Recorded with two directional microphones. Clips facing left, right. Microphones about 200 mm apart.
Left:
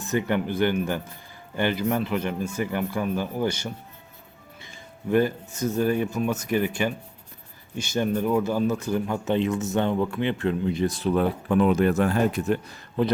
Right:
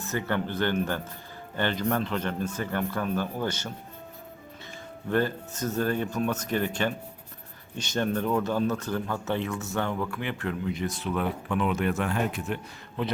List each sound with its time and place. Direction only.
0.1 s speech: 15° left (ahead or behind)
5.0 s speech: 10° left (ahead or behind); by 12.5 s 40° left (ahead or behind)